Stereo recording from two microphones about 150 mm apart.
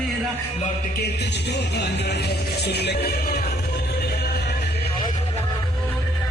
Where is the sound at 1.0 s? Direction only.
90° left.